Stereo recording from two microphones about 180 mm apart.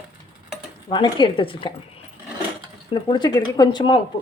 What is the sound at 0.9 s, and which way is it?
Speech, 25° left (ahead or behind).